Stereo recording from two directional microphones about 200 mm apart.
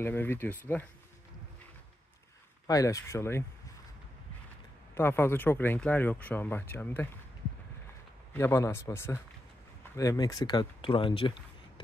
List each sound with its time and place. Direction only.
0.0 s speech: 10° left (ahead or behind)
2.6 s speech: 15° left (ahead or behind)
4.9 s speech: 10° left (ahead or behind)
8.3 s speech: 10° left (ahead or behind)